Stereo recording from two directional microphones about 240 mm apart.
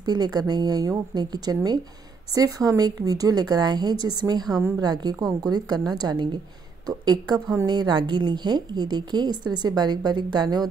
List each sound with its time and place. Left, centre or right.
0.0 s a woman's voice: centre